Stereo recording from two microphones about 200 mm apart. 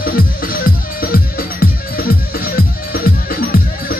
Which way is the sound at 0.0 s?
45° left (ahead or behind).